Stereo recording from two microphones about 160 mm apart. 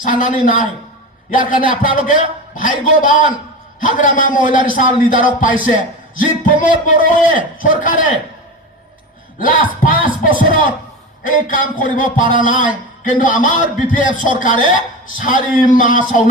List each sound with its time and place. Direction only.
0.0 s a man's voice: 55° left (ahead or behind)
9.9 s a man's voice: 60° left (ahead or behind)